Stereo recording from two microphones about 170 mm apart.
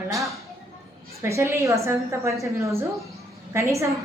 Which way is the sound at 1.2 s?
15° right (ahead or behind).